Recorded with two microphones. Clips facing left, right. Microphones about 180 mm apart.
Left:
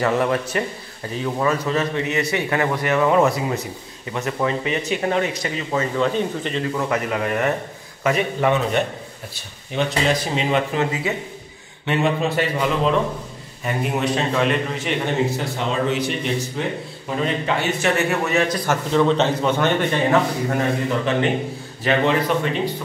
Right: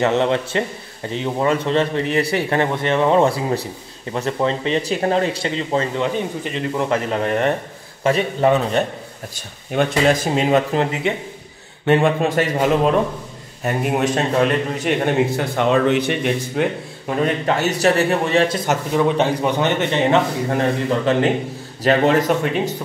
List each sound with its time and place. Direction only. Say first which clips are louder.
0.0 s a man's voice: right 2 dB; 25° right (ahead or behind)
6.1 s a man's voice: left 1 dB; 15° right (ahead or behind)
6.9 s a man's voice: right 3 dB; 30° right (ahead or behind)
9.7 s speech: right 4 dB; 50° right (ahead or behind); by 11.1 s 30° right (ahead or behind)
11.8 s a man's voice: right 5 dB; 50° right (ahead or behind)
17.2 s a man's voice: right 4 dB; 40° right (ahead or behind)
18.7 s a man's voice: even; 10° right (ahead or behind); by 21.3 s 35° right (ahead or behind)
21.8 s speech: right 4 dB; 45° right (ahead or behind)